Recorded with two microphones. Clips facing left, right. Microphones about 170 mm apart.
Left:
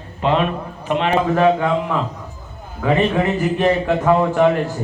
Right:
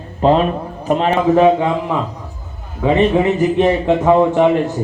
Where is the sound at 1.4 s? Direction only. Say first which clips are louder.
Right 3 dB; 20° right (ahead or behind).